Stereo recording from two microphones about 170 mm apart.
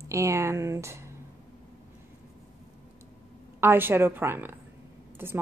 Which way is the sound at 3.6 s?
15° right (ahead or behind).